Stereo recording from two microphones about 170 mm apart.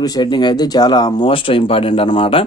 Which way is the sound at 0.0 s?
25° left (ahead or behind).